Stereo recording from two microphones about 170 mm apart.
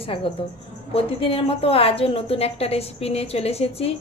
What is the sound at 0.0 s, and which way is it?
A woman's voice, 30° left (ahead or behind).